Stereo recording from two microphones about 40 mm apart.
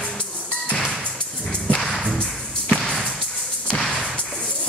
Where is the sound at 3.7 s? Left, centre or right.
Centre.